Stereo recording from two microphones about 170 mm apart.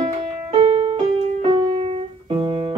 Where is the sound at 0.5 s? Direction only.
35° right (ahead or behind).